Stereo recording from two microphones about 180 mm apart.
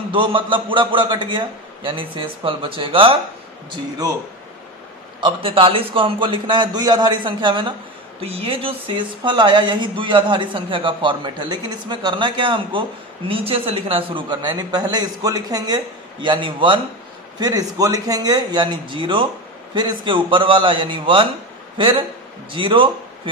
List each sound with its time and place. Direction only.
0.1 s speech: 30° right (ahead or behind)
5.2 s a man's voice: 30° right (ahead or behind)